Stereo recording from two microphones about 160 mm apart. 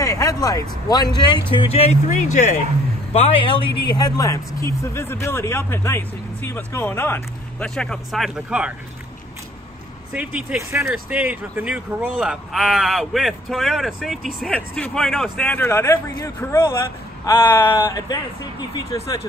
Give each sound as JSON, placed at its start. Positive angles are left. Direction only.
{"t": 0.0, "sound": "vehicle", "side_deg": 20}
{"t": 1.1, "sound": "speech", "side_deg": 25}
{"t": 3.1, "sound": "speech", "side_deg": 35}
{"t": 10.1, "sound": "speech", "side_deg": -10}